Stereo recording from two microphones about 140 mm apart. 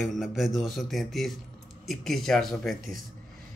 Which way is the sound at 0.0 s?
Centre (ahead or behind).